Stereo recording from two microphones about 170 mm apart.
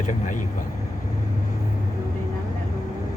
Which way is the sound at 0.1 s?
50° left (ahead or behind).